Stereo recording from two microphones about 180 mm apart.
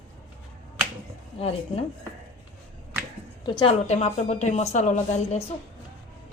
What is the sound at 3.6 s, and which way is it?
A woman's voice, 35° left (ahead or behind).